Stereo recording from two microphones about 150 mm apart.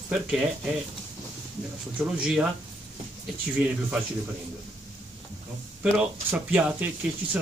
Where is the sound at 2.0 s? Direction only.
5° right (ahead or behind).